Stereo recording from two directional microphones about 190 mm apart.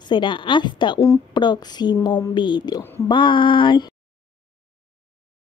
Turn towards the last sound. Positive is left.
turn(degrees=25)  # may be behind; listen again after turning